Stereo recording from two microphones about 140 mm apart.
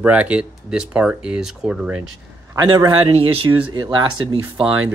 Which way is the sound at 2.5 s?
30° right (ahead or behind).